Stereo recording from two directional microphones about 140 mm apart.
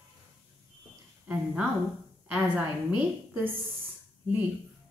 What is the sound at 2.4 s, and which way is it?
A woman's voice, 10° right (ahead or behind).